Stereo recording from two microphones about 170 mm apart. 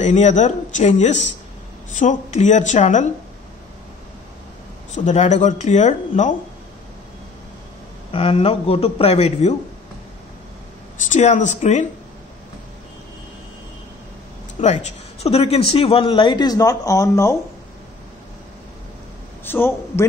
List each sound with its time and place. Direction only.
0.0 s speech: 45° left (ahead or behind)
4.9 s speech: 45° left (ahead or behind)
8.1 s a man's voice: 35° left (ahead or behind)
11.1 s speech: 45° left (ahead or behind)
14.6 s a man's voice: 40° left (ahead or behind); by 17.4 s 20° left (ahead or behind)
19.4 s a man's voice: 15° left (ahead or behind)